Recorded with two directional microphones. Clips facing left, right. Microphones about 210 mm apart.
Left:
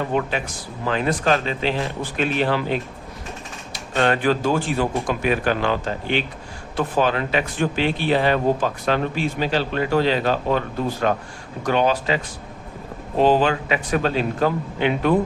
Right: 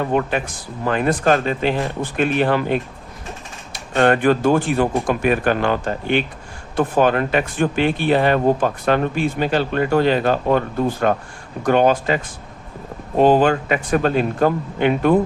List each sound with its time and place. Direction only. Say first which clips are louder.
0.1 s speech: right 3 dB; 50° right (ahead or behind)